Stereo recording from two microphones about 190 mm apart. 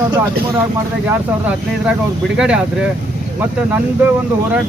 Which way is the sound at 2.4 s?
5° right (ahead or behind).